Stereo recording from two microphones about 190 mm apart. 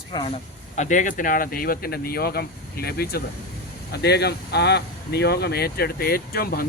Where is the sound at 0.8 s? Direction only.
40° left (ahead or behind).